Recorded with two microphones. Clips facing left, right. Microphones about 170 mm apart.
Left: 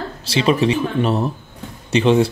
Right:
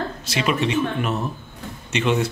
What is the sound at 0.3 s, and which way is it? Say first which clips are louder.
Speech: left 6 dB; 30° left (ahead or behind).